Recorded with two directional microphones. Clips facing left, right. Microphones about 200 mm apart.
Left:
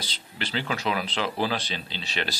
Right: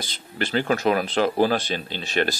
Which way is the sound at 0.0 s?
50° right (ahead or behind).